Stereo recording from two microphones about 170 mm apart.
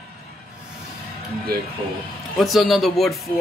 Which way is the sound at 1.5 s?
65° right (ahead or behind).